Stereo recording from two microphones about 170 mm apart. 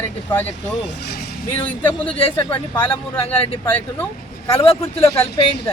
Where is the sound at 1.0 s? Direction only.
70° left (ahead or behind).